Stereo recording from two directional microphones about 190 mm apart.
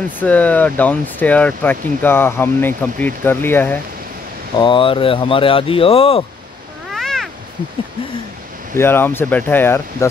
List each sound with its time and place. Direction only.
0.2 s speech: 10° left (ahead or behind)
4.6 s speech: 25° left (ahead or behind)
6.9 s cat: centre (ahead or behind)
8.7 s speech: 10° left (ahead or behind)